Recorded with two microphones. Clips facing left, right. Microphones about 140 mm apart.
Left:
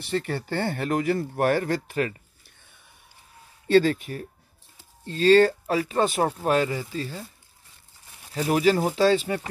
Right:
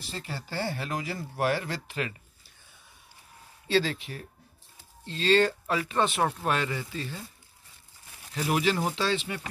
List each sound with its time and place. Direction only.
0.0 s speech: 60° left (ahead or behind); by 2.1 s 45° left (ahead or behind)
3.6 s speech: 50° left (ahead or behind)
8.4 s speech: 35° left (ahead or behind)